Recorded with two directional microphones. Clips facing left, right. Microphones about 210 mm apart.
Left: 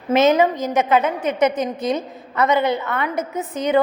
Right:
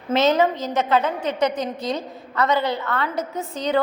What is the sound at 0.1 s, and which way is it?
A woman's voice, 20° left (ahead or behind).